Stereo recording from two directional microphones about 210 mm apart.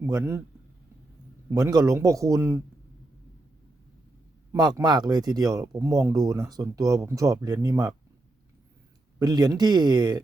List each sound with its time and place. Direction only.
0.0 s speech: 15° right (ahead or behind)
1.5 s speech: 15° right (ahead or behind)
4.5 s speech: 20° right (ahead or behind)
9.1 s speech: 20° right (ahead or behind)